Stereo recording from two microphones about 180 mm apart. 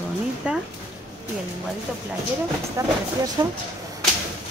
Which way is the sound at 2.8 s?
15° right (ahead or behind).